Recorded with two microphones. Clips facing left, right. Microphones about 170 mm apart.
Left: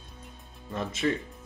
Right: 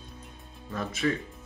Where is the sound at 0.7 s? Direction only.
25° left (ahead or behind).